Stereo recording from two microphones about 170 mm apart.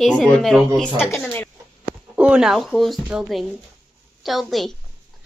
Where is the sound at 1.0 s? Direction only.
15° left (ahead or behind).